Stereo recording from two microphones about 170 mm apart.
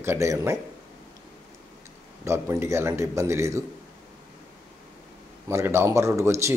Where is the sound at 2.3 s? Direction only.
15° right (ahead or behind).